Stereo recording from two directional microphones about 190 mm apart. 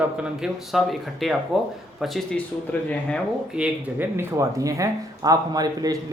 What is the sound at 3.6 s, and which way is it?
Speech, 10° right (ahead or behind).